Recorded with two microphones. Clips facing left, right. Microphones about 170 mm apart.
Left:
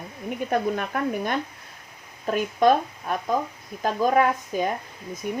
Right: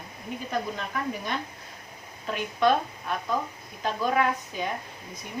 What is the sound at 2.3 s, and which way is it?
Speech, 45° left (ahead or behind).